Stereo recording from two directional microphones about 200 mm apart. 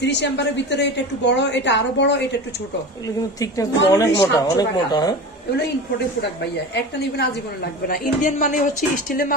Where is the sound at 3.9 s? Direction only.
20° left (ahead or behind).